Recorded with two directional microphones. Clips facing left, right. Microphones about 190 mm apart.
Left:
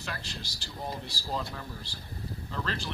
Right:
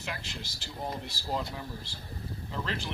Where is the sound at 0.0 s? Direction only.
20° right (ahead or behind).